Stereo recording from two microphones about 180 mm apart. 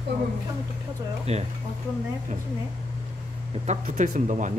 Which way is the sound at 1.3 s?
35° right (ahead or behind).